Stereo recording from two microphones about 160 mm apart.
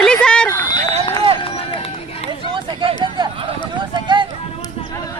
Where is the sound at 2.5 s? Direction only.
35° right (ahead or behind).